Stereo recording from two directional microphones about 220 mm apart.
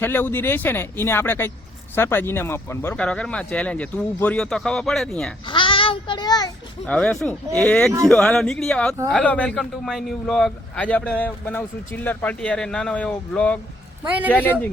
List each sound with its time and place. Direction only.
0.0 s a man's voice: 10° left (ahead or behind)
5.5 s a child's voice: 25° left (ahead or behind)
6.8 s a man's voice: 5° left (ahead or behind)